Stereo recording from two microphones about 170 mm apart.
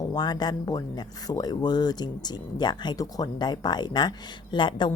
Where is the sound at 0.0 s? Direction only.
25° left (ahead or behind).